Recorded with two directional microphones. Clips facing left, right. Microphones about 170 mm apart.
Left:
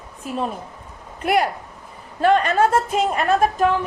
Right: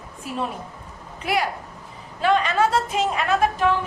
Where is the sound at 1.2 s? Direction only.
50° left (ahead or behind).